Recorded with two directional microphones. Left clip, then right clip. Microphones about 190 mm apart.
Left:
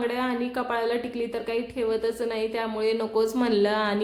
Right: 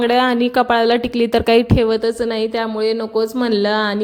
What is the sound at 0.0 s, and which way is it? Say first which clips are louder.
Speech: right 12 dB; 50° right (ahead or behind).